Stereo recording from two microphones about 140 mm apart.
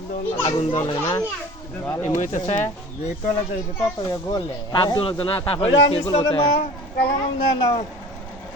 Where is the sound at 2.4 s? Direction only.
55° left (ahead or behind).